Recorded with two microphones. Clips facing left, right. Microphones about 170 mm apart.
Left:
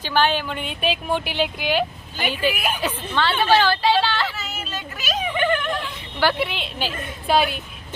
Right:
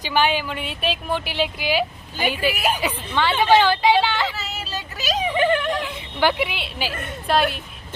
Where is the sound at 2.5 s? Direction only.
35° right (ahead or behind).